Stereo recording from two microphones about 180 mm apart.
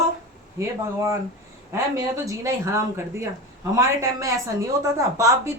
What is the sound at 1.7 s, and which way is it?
Speech, 15° right (ahead or behind).